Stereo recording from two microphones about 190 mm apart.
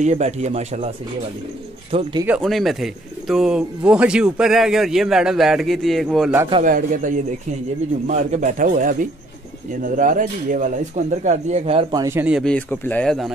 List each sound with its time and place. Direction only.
0.0 s speech: 40° right (ahead or behind)
1.9 s speech: 30° right (ahead or behind)
2.2 s speech: centre (ahead or behind)
6.6 s a man's voice: 45° right (ahead or behind)
12.0 s speech: 10° right (ahead or behind)
12.4 s speech: 5° left (ahead or behind)